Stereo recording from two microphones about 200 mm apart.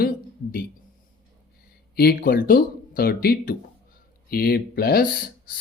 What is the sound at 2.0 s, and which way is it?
Speech, 50° left (ahead or behind).